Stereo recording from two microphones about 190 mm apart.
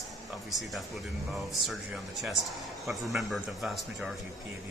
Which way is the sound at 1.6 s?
Centre (ahead or behind).